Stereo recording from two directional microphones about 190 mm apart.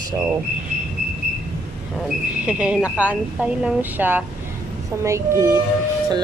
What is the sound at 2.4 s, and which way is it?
Speech, 5° right (ahead or behind).